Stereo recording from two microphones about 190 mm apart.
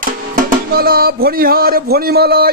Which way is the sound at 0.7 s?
55° right (ahead or behind).